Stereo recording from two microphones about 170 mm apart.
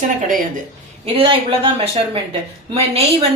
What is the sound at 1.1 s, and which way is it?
Speech, 30° right (ahead or behind).